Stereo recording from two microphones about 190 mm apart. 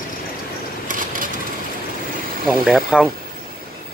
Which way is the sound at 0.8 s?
45° right (ahead or behind).